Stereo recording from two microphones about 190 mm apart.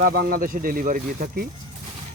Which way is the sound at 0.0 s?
50° right (ahead or behind).